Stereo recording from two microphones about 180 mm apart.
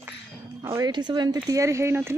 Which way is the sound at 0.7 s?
20° right (ahead or behind).